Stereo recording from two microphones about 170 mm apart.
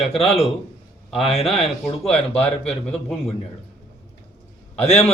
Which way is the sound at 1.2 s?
35° left (ahead or behind).